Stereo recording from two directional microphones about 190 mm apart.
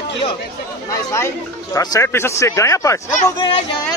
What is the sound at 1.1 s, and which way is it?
Speech, 15° left (ahead or behind).